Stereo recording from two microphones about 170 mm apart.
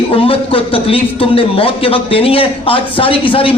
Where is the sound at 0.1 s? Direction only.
35° left (ahead or behind).